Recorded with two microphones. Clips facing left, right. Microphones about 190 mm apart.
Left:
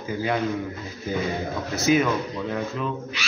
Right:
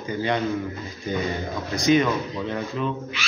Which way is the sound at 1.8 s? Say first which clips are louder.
Right 1 dB; 5° left (ahead or behind).